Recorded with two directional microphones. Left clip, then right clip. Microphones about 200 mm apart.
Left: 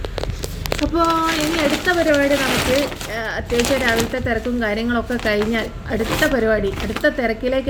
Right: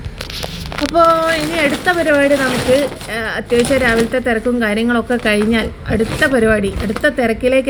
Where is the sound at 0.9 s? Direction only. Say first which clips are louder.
Right 7 dB; 20° right (ahead or behind).